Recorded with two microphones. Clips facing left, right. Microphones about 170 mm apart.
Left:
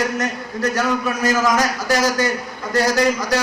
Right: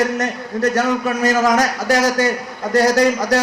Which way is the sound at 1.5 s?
65° right (ahead or behind).